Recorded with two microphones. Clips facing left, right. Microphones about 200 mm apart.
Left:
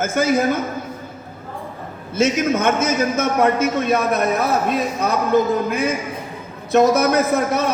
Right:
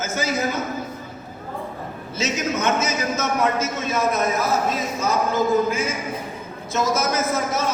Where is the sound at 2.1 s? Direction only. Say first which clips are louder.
Left 7 dB; 55° left (ahead or behind).